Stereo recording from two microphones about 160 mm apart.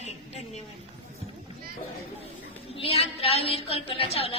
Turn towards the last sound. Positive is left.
turn(degrees=35)  # may be behind; listen again after turning